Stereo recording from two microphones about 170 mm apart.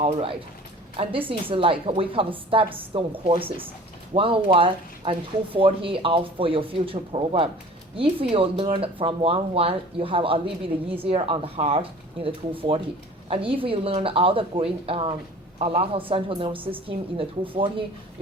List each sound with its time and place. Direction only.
0.0 s speech: 35° right (ahead or behind)